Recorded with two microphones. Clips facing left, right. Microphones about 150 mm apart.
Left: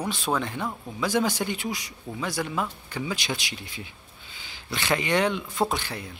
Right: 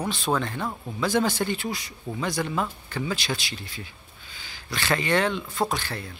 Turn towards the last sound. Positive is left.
turn(degrees=15)  # may be behind; listen again after turning